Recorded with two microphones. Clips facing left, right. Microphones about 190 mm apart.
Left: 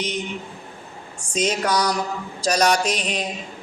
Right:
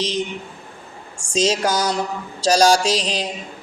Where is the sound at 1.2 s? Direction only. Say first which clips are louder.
Right 4 dB; 85° right.